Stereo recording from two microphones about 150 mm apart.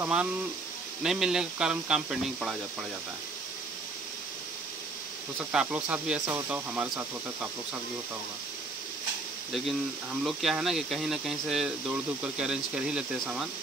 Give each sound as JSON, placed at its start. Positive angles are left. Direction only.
{"t": 0.0, "sound": "speech", "side_deg": -10}
{"t": 5.4, "sound": "speech", "side_deg": -10}
{"t": 10.2, "sound": "speech", "side_deg": 0}